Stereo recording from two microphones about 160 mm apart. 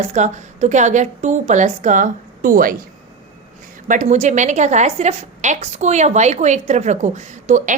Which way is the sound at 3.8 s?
55° right (ahead or behind).